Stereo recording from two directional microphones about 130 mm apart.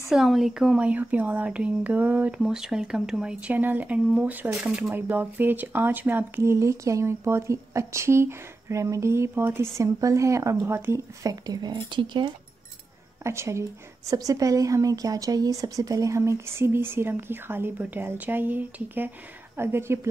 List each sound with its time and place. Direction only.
0.1 s speech: centre (ahead or behind); by 11.3 s 20° right (ahead or behind)
11.4 s speech: 30° right (ahead or behind)
13.2 s speech: 20° right (ahead or behind)